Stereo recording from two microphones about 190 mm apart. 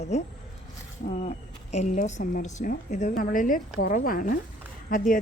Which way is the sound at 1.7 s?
40° left (ahead or behind).